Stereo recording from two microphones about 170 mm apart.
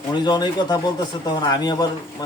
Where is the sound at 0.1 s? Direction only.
25° left (ahead or behind).